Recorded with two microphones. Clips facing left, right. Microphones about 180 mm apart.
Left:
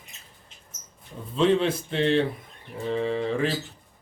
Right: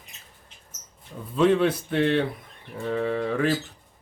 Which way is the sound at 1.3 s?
25° left (ahead or behind).